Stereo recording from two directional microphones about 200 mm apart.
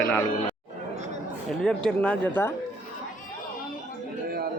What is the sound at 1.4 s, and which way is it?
Speech, 5° left (ahead or behind).